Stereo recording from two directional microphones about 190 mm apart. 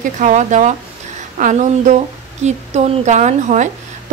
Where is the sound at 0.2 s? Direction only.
40° right (ahead or behind).